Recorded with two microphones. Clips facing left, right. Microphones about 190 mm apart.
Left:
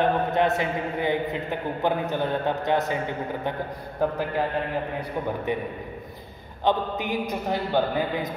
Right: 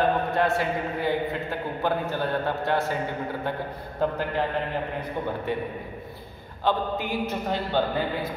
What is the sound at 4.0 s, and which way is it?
Speech, 10° left (ahead or behind).